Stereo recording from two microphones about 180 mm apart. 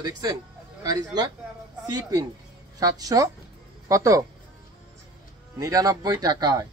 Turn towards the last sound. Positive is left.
turn(degrees=-20)  # may be behind; listen again after turning